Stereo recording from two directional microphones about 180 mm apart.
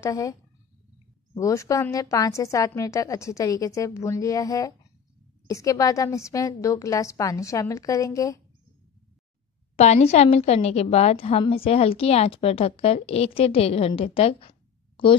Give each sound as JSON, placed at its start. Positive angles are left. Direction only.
{"t": 0.0, "sound": "speech", "side_deg": 20}
{"t": 1.4, "sound": "a woman's voice", "side_deg": 15}
{"t": 9.8, "sound": "a woman's voice", "side_deg": 35}